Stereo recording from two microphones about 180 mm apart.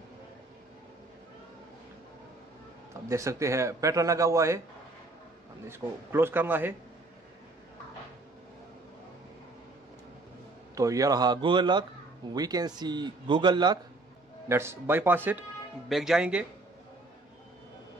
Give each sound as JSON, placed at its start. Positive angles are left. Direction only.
{"t": 3.1, "sound": "a man's voice", "side_deg": -15}
{"t": 5.7, "sound": "a man's voice", "side_deg": -10}
{"t": 10.7, "sound": "speech", "side_deg": -20}
{"t": 14.5, "sound": "a man's voice", "side_deg": -15}